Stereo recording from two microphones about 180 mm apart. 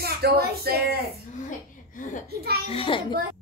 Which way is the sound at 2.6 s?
30° left (ahead or behind).